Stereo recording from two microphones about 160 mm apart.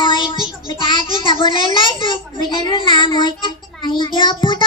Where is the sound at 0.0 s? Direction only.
30° left (ahead or behind).